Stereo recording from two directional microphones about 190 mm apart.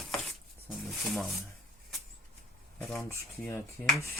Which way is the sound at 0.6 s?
Centre (ahead or behind).